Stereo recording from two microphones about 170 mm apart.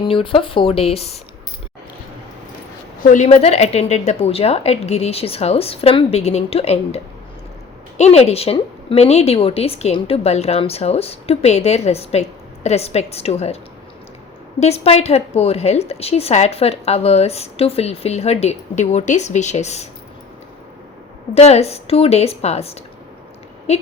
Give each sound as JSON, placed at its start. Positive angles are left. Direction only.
{"t": 0.0, "sound": "a woman's voice", "side_deg": 30}
{"t": 3.0, "sound": "a woman's voice", "side_deg": 50}
{"t": 14.6, "sound": "a woman's voice", "side_deg": 40}
{"t": 21.3, "sound": "a woman's voice", "side_deg": 40}